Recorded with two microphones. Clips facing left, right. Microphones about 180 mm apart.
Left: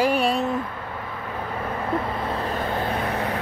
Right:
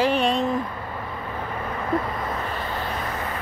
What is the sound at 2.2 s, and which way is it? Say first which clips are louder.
Vehicle: left 3 dB; 35° left (ahead or behind).